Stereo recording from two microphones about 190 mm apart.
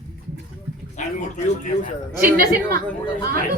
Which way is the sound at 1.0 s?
40° left (ahead or behind).